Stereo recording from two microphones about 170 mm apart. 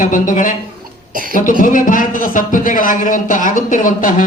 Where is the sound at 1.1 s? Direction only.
55° right (ahead or behind).